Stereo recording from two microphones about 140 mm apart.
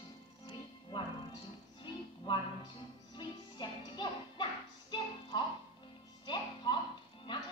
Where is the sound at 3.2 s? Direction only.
30° left (ahead or behind).